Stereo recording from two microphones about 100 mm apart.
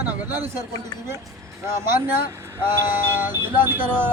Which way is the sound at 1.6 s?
25° right (ahead or behind).